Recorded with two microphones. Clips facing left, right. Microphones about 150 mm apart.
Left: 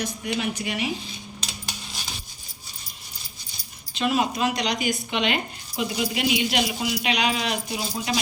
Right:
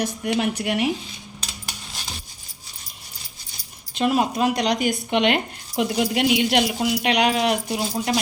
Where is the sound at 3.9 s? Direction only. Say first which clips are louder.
Right 3 dB; 45° right (ahead or behind).